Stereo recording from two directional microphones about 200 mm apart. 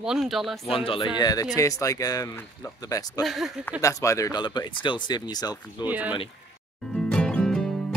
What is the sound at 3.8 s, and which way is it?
Speech, 15° left (ahead or behind).